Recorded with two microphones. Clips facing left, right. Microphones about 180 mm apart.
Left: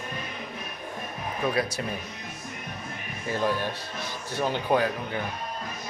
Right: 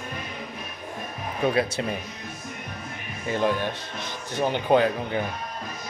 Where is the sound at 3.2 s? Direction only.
20° right (ahead or behind).